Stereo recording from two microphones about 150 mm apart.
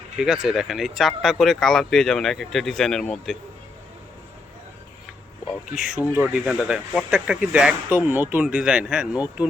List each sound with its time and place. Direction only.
0.2 s speech: 5° right (ahead or behind)
5.7 s speech: 5° right (ahead or behind)